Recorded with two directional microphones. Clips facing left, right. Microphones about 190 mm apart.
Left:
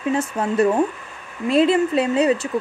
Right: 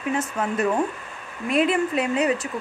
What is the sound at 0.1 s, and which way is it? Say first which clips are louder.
A woman's voice: left 3 dB; 30° left (ahead or behind).